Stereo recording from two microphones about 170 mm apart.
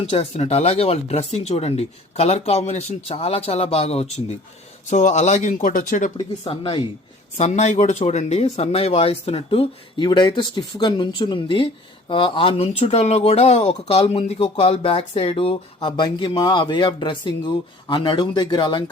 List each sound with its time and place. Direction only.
0.1 s speech: 35° left (ahead or behind); by 6.1 s 50° left (ahead or behind)
6.4 s speech: 35° left (ahead or behind)
7.3 s speech: 40° left (ahead or behind)